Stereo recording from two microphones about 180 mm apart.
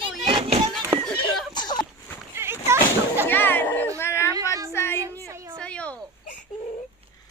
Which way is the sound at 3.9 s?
15° left (ahead or behind).